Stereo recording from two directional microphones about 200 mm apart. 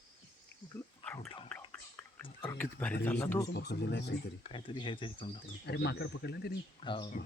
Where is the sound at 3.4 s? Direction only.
55° left (ahead or behind).